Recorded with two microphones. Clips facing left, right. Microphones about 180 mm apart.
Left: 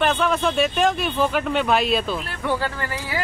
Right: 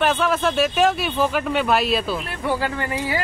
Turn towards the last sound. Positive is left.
turn(degrees=0)  # may be behind; listen again after turning